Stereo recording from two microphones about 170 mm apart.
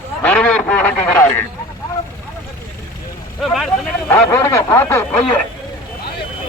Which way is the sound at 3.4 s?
Centre (ahead or behind).